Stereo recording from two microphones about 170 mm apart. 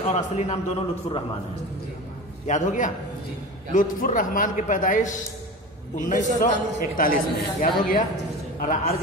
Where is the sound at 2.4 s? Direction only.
45° left (ahead or behind).